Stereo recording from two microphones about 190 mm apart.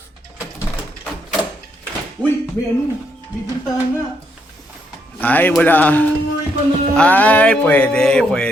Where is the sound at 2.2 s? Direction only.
20° right (ahead or behind).